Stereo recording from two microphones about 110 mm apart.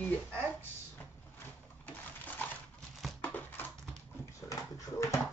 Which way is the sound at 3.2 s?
15° left (ahead or behind).